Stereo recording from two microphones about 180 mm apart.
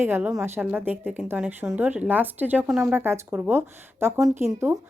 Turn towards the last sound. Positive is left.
turn(degrees=-15)  # may be behind; listen again after turning